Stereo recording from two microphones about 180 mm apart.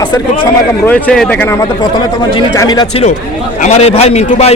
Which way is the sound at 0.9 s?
5° left (ahead or behind).